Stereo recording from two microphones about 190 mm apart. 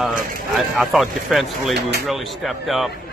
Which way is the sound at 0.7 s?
Centre (ahead or behind).